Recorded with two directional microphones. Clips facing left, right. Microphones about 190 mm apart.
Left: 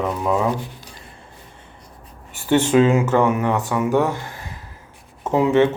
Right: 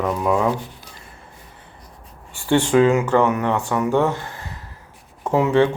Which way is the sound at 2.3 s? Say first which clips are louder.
Left 1 dB; 20° left (ahead or behind).